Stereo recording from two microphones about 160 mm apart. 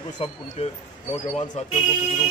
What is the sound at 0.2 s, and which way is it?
A man's voice, 35° left (ahead or behind).